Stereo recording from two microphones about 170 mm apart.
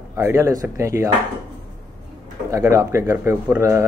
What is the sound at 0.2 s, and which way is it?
Speech, 15° right (ahead or behind).